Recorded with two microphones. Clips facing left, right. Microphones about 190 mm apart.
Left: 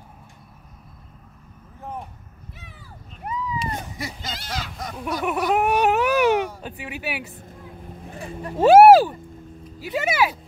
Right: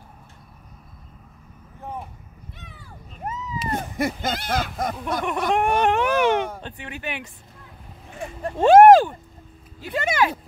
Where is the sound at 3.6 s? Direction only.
55° right (ahead or behind).